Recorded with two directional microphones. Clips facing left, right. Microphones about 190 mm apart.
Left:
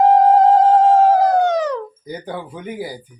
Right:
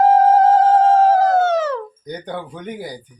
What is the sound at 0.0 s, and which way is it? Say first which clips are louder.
Howl: left 1 dB; 15° left (ahead or behind).